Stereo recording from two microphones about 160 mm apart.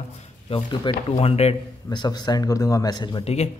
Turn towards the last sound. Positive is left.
turn(degrees=45)  # may be behind; listen again after turning